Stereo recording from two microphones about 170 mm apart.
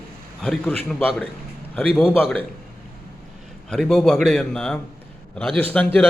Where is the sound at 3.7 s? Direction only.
5° left (ahead or behind).